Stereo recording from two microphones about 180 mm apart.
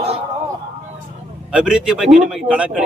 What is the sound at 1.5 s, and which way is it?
A man's voice, 5° right (ahead or behind).